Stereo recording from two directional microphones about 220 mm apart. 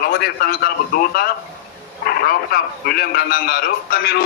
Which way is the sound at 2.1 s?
45° left (ahead or behind).